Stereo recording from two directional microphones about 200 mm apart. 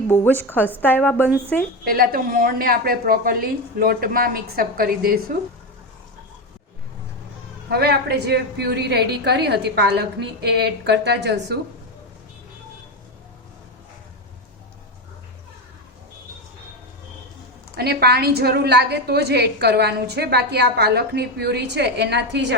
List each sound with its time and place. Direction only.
0.1 s a woman's voice: 10° left (ahead or behind)
1.8 s speech: 45° right (ahead or behind)
7.7 s a woman's voice: 50° right (ahead or behind)
17.7 s a woman's voice: 55° right (ahead or behind)